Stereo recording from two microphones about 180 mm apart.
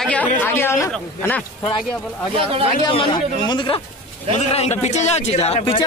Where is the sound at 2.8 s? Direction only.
25° left (ahead or behind).